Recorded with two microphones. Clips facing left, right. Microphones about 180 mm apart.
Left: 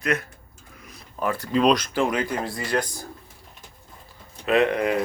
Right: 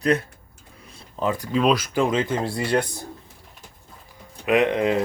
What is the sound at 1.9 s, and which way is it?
Speech, 20° right (ahead or behind).